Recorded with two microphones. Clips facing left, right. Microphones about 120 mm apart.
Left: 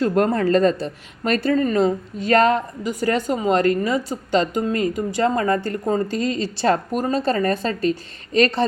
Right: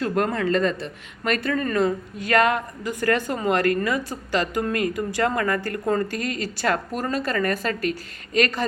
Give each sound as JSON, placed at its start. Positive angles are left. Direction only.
{"t": 0.0, "sound": "speech", "side_deg": 40}
{"t": 3.1, "sound": "a woman's voice", "side_deg": 15}